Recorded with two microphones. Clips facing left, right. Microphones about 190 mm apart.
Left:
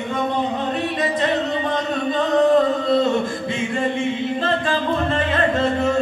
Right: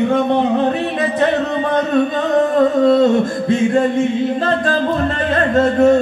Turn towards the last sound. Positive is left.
turn(degrees=-40)  # may be behind; listen again after turning